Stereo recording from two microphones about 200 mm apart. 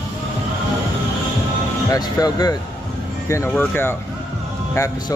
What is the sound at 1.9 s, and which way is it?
Speech, 20° left (ahead or behind).